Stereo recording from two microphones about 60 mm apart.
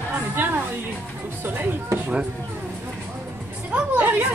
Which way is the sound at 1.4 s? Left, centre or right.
Right.